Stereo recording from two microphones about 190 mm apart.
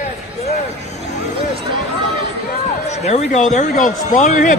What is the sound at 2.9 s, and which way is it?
A man's voice, 35° left (ahead or behind).